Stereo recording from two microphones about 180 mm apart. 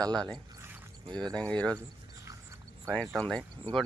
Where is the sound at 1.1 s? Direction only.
25° right (ahead or behind).